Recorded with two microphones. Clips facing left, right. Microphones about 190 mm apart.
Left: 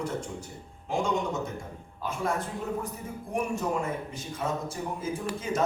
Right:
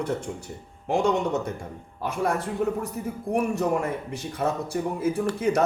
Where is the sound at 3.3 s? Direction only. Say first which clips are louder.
Right 5 dB; 70° right (ahead or behind).